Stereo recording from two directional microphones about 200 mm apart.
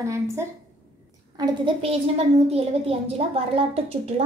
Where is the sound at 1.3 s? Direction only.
25° right (ahead or behind).